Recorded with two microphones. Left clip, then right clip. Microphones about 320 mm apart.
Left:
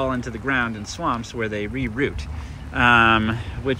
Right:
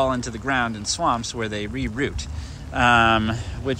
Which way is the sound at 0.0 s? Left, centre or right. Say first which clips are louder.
Right 2 dB; centre.